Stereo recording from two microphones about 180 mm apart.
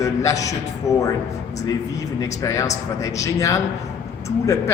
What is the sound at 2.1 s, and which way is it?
A man's voice, 15° left (ahead or behind).